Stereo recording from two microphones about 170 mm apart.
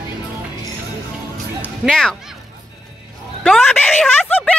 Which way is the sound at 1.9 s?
5° left (ahead or behind).